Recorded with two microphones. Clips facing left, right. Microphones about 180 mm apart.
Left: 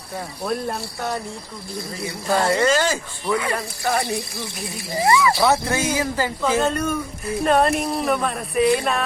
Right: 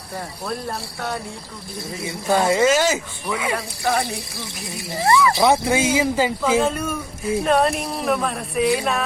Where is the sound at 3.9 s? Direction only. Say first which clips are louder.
Left 1 dB; 15° left (ahead or behind).